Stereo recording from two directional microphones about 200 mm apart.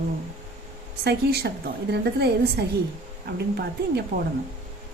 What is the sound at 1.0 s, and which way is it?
Speech, 55° right (ahead or behind).